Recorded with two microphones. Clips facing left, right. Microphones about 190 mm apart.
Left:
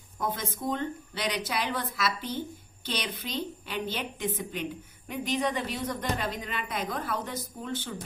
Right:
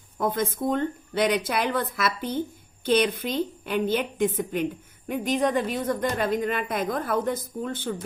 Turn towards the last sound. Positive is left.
turn(degrees=-50)  # may be behind; listen again after turning